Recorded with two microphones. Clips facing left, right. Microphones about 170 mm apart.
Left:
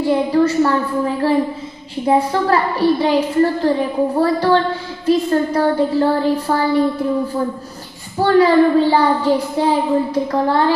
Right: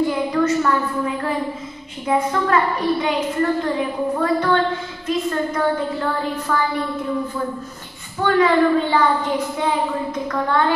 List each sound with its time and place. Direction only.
0.0 s a sound: 30° left (ahead or behind)
2.0 s a woman's voice: 35° left (ahead or behind)
8.2 s a woman's voice: 35° left (ahead or behind)